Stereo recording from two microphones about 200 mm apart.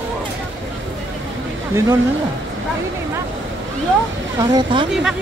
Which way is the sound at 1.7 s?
15° right (ahead or behind).